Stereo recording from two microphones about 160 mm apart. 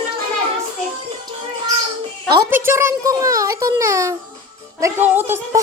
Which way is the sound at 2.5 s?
15° right (ahead or behind).